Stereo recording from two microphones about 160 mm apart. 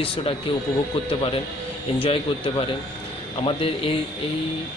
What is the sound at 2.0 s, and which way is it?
A man's voice, 35° left (ahead or behind).